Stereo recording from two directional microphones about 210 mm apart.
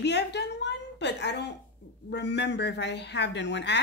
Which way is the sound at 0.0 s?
55° left (ahead or behind).